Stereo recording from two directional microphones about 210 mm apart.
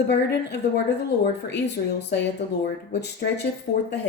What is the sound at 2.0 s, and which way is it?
Speech, 55° left (ahead or behind).